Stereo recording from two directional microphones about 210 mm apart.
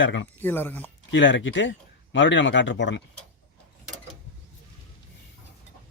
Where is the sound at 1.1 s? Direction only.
60° left (ahead or behind).